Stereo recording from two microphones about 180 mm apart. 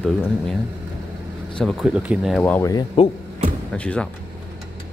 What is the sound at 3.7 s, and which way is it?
Speech, 5° left (ahead or behind).